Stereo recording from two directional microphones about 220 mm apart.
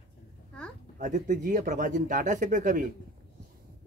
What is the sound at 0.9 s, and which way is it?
Speech, 35° right (ahead or behind).